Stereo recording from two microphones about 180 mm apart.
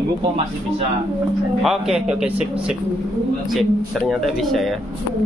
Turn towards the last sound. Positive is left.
turn(degrees=0)  # may be behind; listen again after turning